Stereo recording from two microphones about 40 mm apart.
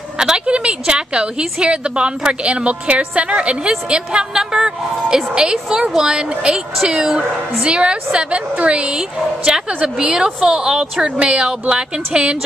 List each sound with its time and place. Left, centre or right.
0.2 s a woman's voice: right
8.9 s speech: centre
9.7 s a woman's voice: right